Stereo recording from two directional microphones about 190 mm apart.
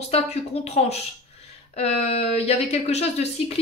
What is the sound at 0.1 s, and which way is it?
A woman's voice, 35° left (ahead or behind).